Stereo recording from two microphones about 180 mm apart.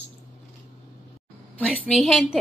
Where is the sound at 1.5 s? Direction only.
10° left (ahead or behind).